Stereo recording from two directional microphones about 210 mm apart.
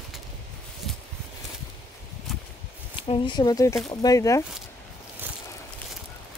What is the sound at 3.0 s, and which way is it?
Speech, 25° left (ahead or behind).